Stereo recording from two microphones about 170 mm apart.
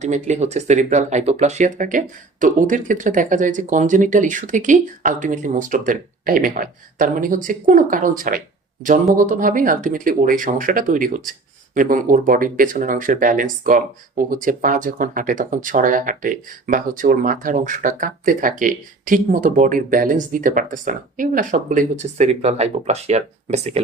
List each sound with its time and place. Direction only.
0.0 s speech: 45° right (ahead or behind)